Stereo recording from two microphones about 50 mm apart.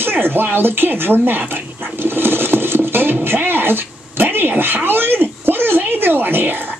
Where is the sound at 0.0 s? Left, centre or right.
Right.